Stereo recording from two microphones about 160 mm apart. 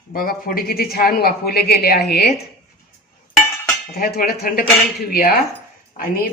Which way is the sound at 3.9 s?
70° left (ahead or behind).